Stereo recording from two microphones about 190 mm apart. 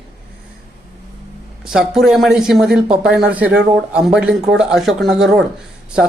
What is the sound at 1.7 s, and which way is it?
Speech, centre (ahead or behind).